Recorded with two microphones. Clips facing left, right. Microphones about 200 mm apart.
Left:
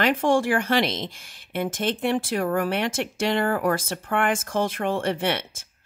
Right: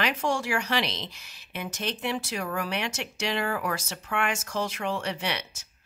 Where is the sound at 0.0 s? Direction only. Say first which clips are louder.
Left 7 dB; 50° left (ahead or behind).